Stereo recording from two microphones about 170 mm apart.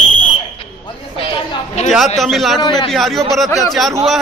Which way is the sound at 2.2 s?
Centre (ahead or behind).